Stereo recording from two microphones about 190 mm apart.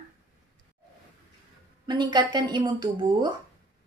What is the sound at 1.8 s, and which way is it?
Speech, 20° right (ahead or behind).